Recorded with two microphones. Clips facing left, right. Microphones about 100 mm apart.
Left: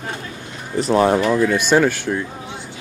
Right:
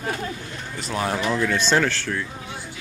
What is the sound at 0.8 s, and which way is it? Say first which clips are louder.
Speech: left 11 dB; 35° left (ahead or behind).